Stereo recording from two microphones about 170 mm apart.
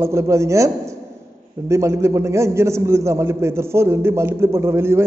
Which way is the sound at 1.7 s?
15° right (ahead or behind).